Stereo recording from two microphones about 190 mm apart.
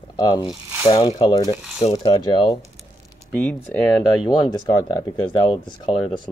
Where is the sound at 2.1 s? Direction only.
25° left (ahead or behind).